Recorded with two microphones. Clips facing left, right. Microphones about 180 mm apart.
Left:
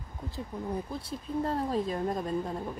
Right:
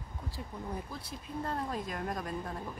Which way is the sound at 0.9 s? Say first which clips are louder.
Left 7 dB; 30° left (ahead or behind).